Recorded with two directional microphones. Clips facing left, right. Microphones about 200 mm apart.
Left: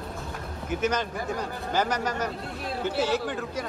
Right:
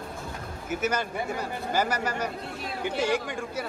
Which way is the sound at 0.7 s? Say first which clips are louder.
Left 1 dB; 10° right (ahead or behind).